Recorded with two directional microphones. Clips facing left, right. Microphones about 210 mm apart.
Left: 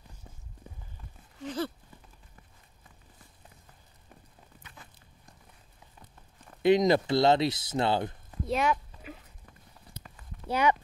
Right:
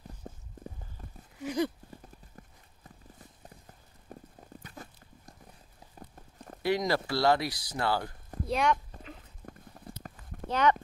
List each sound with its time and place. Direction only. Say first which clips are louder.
0.2 s a sound: right 11 dB; 45° right (ahead or behind)
1.4 s a sound: right 3 dB; 10° right (ahead or behind)
4.1 s clip-clop: right 9 dB; 40° right (ahead or behind)
4.6 s a sound: right 7 dB; 40° right (ahead or behind)
5.9 s clip-clop: right 8 dB; 40° right (ahead or behind)
6.6 s speech: left 6 dB; 20° left (ahead or behind)
8.5 s speech: even; centre (ahead or behind)
9.5 s clip-clop: right 7 dB; 50° right (ahead or behind)
10.5 s speech: even; 10° left (ahead or behind)